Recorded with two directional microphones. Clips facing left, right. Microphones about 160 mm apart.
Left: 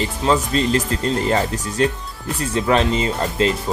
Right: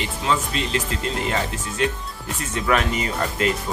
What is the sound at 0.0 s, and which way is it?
Speech, 35° left (ahead or behind).